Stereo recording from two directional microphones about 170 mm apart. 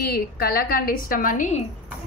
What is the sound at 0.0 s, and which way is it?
A woman's voice, 65° left (ahead or behind).